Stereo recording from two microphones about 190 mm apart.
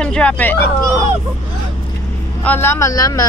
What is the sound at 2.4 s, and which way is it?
Speech, 10° left (ahead or behind).